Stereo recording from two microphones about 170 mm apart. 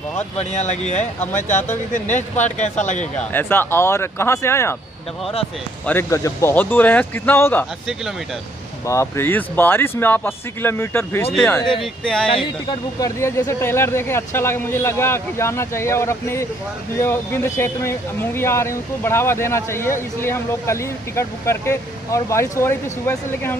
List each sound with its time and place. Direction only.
0.4 s speech: 45° left (ahead or behind)
3.2 s speech: 10° left (ahead or behind)
5.9 s speech: 15° left (ahead or behind)
8.8 s speech: 15° left (ahead or behind)
12.3 s speech: 30° left (ahead or behind)
13.2 s speech: 15° left (ahead or behind)